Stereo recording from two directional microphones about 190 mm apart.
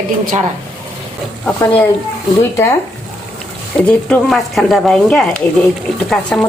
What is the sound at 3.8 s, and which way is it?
Speech, 5° left (ahead or behind).